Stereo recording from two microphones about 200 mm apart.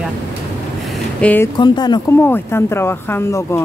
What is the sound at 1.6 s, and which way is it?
Speech, 20° left (ahead or behind).